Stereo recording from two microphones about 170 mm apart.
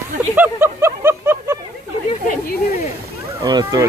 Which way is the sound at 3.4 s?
20° right (ahead or behind).